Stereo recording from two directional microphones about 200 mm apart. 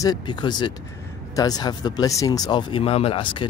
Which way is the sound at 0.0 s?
20° left (ahead or behind).